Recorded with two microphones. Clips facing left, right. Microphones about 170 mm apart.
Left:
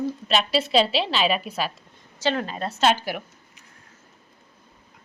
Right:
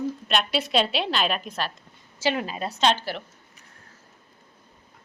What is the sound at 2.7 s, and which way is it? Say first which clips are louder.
Speech: left 2 dB; 5° left (ahead or behind).